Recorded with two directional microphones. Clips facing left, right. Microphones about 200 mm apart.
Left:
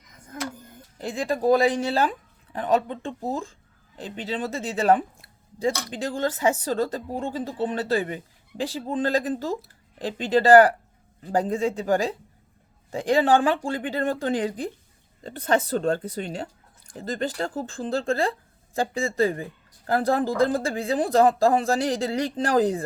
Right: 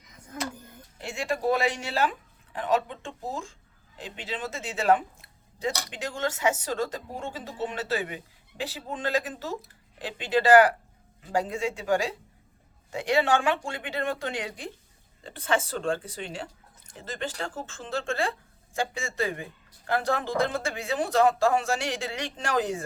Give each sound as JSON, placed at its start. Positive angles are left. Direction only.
{"t": 1.0, "sound": "speech", "side_deg": 35}